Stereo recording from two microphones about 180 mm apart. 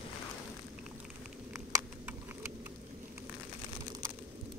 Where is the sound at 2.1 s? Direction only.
10° right (ahead or behind).